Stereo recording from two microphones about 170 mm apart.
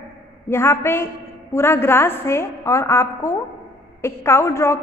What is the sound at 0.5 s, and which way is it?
A woman's voice, 15° left (ahead or behind).